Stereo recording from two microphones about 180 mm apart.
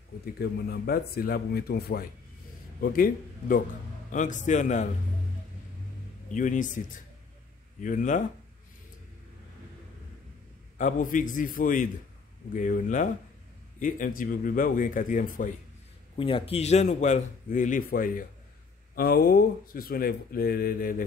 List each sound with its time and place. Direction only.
0.4 s speech: 60° left (ahead or behind); by 4.8 s 40° left (ahead or behind)
6.3 s speech: 45° left (ahead or behind)
7.8 s speech: 45° left (ahead or behind)
10.8 s speech: 45° left (ahead or behind)
16.2 s speech: 30° left (ahead or behind); by 20.9 s 55° left (ahead or behind)